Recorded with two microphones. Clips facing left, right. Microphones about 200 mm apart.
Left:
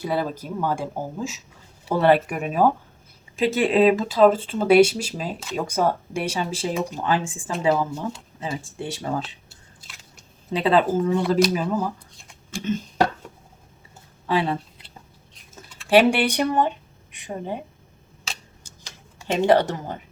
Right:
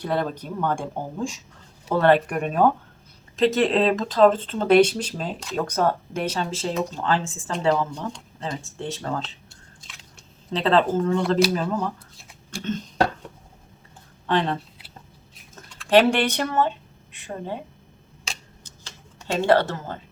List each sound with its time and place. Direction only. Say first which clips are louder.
0.0 s speech: even; 5° left (ahead or behind)
10.5 s speech: left 1 dB; 10° left (ahead or behind)
12.6 s a sound: left 1 dB; 10° left (ahead or behind)
14.3 s speech: even; 5° left (ahead or behind)
18.3 s tick-tock: even; 10° left (ahead or behind)